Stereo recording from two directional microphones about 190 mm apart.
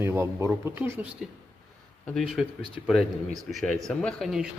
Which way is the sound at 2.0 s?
Centre (ahead or behind).